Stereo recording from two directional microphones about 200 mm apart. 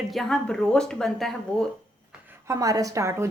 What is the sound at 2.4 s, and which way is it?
Speech, 15° right (ahead or behind).